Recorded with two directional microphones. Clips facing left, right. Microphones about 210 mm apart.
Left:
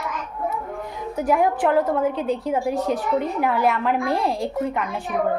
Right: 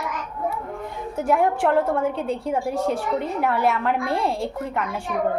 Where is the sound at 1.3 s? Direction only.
5° left (ahead or behind).